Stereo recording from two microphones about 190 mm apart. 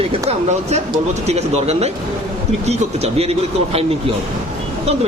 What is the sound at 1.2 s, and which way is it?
Speech, 35° right (ahead or behind).